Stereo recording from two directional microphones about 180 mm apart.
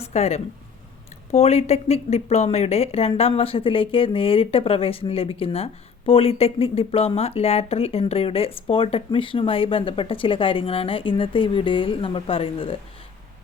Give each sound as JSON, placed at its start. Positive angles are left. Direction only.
{"t": 0.0, "sound": "speech", "side_deg": 35}